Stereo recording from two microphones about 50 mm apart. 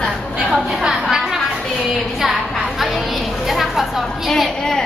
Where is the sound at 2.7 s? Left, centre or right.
Centre.